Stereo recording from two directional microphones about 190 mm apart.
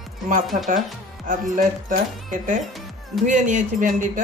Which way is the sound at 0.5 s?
45° right (ahead or behind).